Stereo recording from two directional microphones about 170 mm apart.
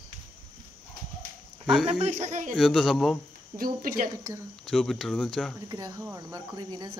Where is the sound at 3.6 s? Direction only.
55° right (ahead or behind).